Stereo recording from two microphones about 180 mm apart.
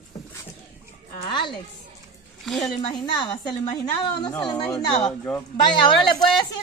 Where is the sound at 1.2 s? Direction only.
25° left (ahead or behind).